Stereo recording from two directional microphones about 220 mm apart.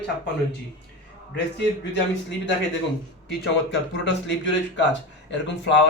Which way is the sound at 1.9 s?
55° left (ahead or behind).